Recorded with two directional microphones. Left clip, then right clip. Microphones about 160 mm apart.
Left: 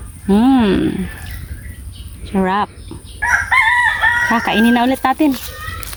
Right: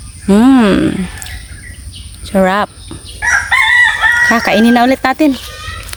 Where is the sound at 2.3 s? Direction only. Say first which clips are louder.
Right 5 dB; 50° right (ahead or behind).